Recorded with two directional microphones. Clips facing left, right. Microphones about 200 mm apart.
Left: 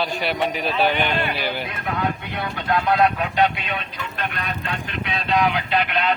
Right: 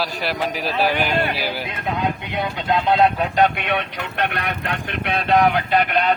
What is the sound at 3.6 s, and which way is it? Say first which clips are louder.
Speech: right 6 dB; 70° right (ahead or behind).